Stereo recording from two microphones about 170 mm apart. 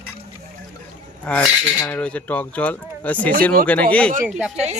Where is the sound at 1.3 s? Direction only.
5° left (ahead or behind).